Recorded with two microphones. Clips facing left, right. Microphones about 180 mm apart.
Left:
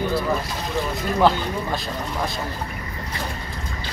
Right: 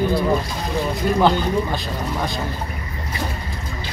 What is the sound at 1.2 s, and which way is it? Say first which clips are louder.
Speech: even; centre (ahead or behind).